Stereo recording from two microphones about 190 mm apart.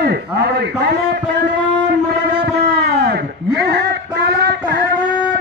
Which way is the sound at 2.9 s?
60° right (ahead or behind).